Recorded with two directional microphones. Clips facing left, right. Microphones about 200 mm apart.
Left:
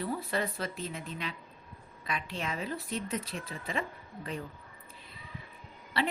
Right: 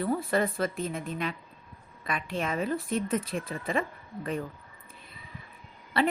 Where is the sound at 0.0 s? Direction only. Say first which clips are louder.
Right 6 dB; 55° right (ahead or behind).